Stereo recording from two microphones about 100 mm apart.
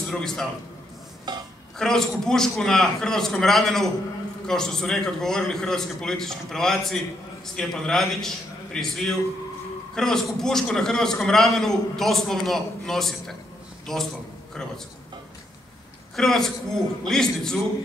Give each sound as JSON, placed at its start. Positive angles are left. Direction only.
{"t": 0.1, "sound": "a man's voice", "side_deg": 5}
{"t": 1.3, "sound": "a sound", "side_deg": -50}
{"t": 1.8, "sound": "a man's voice", "side_deg": 5}
{"t": 16.2, "sound": "a man's voice", "side_deg": 5}